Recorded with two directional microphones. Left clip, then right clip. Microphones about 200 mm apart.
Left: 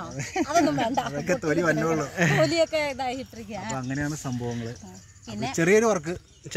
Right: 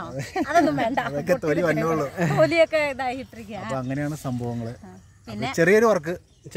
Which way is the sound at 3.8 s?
50° right (ahead or behind).